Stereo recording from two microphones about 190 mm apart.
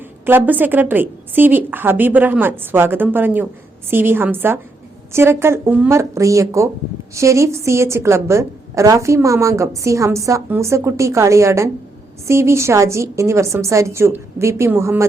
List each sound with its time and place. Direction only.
0.3 s a woman's voice: 10° right (ahead or behind)